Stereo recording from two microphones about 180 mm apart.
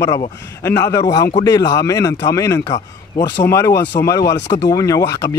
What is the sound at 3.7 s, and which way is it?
Speech, 75° left (ahead or behind).